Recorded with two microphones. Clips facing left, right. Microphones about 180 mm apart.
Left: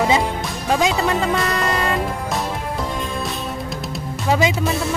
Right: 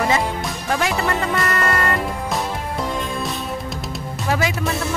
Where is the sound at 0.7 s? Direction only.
20° left (ahead or behind).